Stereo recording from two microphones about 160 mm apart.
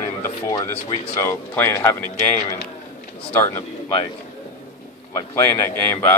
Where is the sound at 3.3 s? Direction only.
15° left (ahead or behind).